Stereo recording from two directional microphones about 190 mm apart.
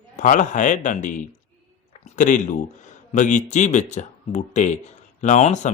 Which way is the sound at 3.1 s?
40° left (ahead or behind).